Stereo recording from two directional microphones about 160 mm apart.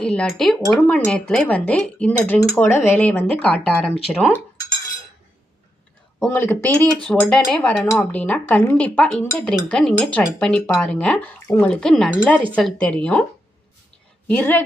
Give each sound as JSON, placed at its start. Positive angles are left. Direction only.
{"t": 0.0, "sound": "speech", "side_deg": 5}
{"t": 6.1, "sound": "speech", "side_deg": 10}
{"t": 14.3, "sound": "speech", "side_deg": 10}